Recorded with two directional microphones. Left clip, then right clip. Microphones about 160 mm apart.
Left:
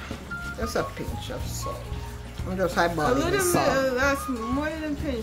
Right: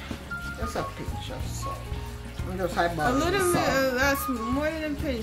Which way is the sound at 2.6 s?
40° left (ahead or behind).